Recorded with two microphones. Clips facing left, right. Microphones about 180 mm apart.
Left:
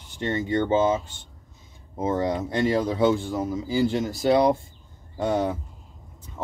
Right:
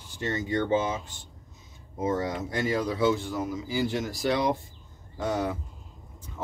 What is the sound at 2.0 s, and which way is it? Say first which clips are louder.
Speech: left 4 dB; 25° left (ahead or behind).